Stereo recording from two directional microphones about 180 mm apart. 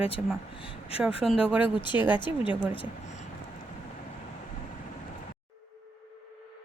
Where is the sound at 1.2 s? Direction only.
5° right (ahead or behind).